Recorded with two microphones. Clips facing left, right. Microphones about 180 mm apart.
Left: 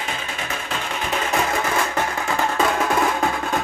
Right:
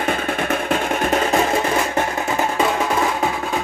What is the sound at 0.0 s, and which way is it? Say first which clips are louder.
Music: right 8 dB; 55° right (ahead or behind).